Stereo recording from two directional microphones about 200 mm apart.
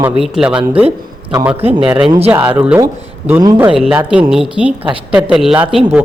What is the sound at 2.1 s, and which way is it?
Speech, 30° right (ahead or behind).